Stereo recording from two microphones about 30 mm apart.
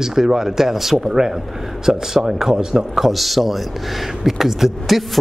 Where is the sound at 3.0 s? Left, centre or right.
Centre.